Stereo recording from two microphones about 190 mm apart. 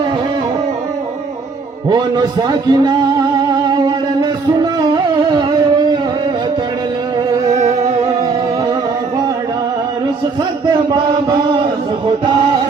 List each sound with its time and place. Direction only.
1.9 s a man's voice: 20° right (ahead or behind)
3.7 s music: 20° right (ahead or behind)
5.3 s a sound: 20° right (ahead or behind)
10.9 s chant: 25° right (ahead or behind)